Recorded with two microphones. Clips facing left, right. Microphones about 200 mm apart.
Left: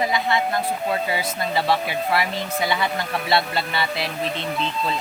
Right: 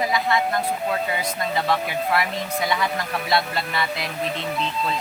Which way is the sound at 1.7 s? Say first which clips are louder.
Even; 30° left (ahead or behind).